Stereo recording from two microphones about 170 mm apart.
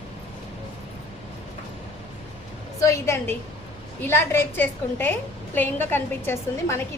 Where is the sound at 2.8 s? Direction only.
15° left (ahead or behind).